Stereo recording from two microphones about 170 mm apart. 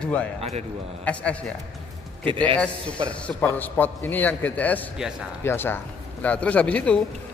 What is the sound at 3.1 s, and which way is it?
A man's voice, 5° left (ahead or behind).